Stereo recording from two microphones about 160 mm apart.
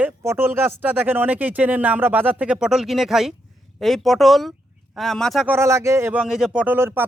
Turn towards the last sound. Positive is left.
turn(degrees=-15)  # may be behind; listen again after turning